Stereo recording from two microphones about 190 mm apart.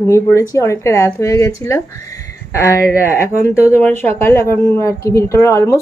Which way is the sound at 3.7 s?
10° left (ahead or behind).